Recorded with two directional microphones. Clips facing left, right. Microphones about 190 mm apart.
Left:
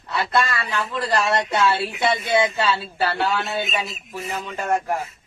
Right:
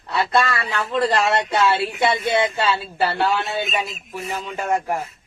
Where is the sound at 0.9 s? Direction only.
25° right (ahead or behind).